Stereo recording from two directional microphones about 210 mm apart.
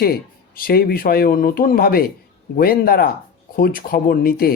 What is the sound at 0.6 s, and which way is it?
Speech, 45° left (ahead or behind).